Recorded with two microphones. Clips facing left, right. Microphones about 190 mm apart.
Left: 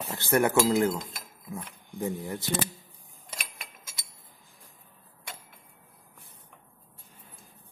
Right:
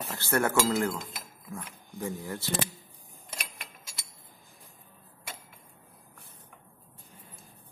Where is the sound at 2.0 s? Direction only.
20° left (ahead or behind).